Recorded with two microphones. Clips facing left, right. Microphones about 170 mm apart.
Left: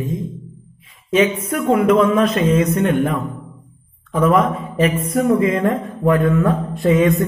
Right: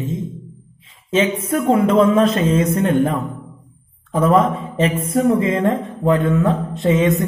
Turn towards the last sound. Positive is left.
turn(degrees=-20)  # may be behind; listen again after turning